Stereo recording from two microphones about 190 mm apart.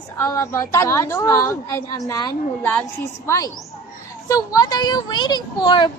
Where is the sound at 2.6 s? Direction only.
10° left (ahead or behind).